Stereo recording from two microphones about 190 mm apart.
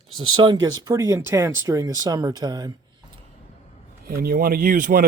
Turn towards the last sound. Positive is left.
turn(degrees=-50)  # may be behind; listen again after turning